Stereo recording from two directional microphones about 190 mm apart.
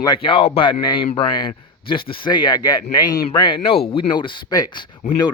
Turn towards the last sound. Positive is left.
turn(degrees=20)  # may be behind; listen again after turning